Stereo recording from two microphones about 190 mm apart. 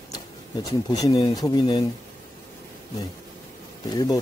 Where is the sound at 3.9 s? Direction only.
20° left (ahead or behind).